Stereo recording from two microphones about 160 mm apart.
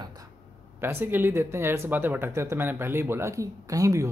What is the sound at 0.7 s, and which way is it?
Speech, 15° right (ahead or behind).